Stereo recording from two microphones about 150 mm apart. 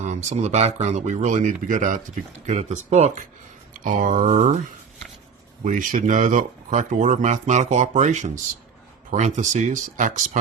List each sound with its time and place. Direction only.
0.0 s speech: 55° right (ahead or behind)
3.8 s speech: 60° right (ahead or behind)
5.6 s speech: 60° right (ahead or behind)